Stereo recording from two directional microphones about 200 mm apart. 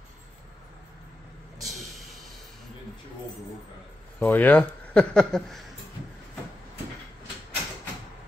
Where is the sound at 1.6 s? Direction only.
Centre (ahead or behind).